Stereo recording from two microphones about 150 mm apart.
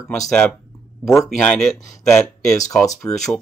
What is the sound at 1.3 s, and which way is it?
Speech, 5° left (ahead or behind).